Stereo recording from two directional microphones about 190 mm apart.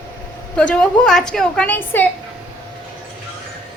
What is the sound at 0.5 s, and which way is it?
A woman's voice, 5° left (ahead or behind).